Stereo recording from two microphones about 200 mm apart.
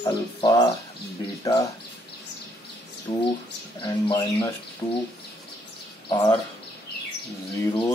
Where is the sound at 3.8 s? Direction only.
20° left (ahead or behind).